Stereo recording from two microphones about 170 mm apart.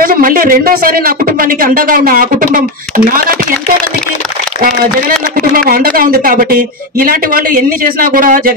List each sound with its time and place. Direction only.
0.0 s speech: 55° right (ahead or behind)
5.4 s speech: 60° right (ahead or behind)